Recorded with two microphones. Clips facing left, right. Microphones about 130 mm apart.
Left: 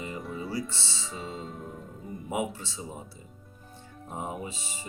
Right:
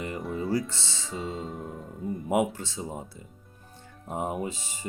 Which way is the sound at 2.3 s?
55° right (ahead or behind).